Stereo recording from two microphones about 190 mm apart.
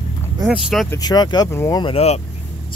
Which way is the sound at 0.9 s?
20° left (ahead or behind).